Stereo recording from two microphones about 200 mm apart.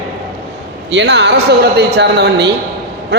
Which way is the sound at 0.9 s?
60° right (ahead or behind).